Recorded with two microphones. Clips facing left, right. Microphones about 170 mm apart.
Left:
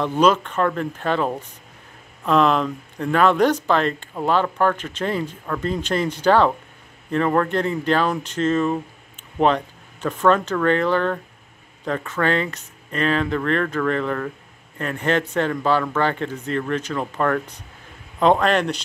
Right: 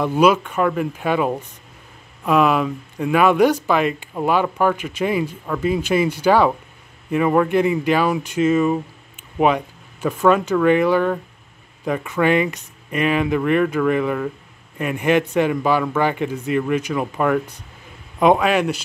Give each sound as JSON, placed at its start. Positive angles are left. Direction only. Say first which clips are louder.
{"t": 0.0, "sound": "speech", "louder": "right 2 dB", "side_deg": -10}